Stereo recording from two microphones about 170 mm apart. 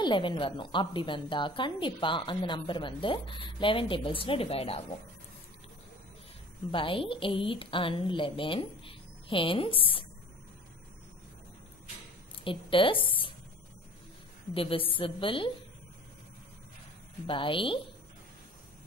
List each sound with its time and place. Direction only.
0.0 s a woman's voice: 30° left (ahead or behind)
6.7 s a woman's voice: 30° left (ahead or behind)
12.4 s a woman's voice: 30° left (ahead or behind)
14.5 s a woman's voice: 35° left (ahead or behind)
17.3 s a woman's voice: 30° left (ahead or behind)